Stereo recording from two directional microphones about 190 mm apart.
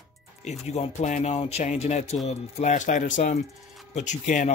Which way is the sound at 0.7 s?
35° left (ahead or behind).